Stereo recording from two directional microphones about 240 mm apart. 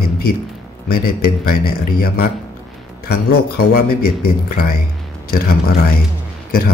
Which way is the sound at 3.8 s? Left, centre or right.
Left.